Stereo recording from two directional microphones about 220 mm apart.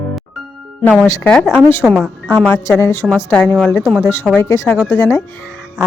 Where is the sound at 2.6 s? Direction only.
10° left (ahead or behind); by 4.1 s 5° right (ahead or behind).